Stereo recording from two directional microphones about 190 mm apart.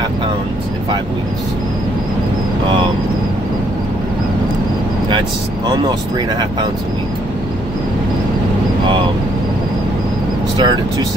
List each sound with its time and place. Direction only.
5.7 s speech: 25° right (ahead or behind)
10.6 s speech: 25° right (ahead or behind)